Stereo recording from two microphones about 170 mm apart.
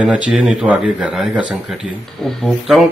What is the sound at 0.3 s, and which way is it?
Speech, 5° right (ahead or behind).